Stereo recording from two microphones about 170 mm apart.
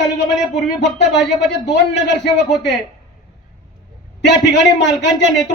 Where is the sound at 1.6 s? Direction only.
90° left.